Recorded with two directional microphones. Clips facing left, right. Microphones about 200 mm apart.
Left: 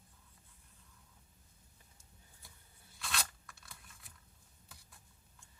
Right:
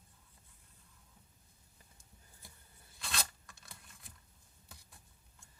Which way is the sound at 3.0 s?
30° right (ahead or behind).